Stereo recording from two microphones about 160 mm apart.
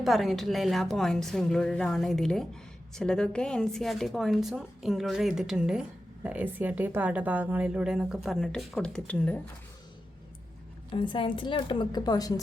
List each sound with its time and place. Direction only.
0.0 s a woman's voice: centre (ahead or behind)
10.9 s a woman's voice: 30° left (ahead or behind)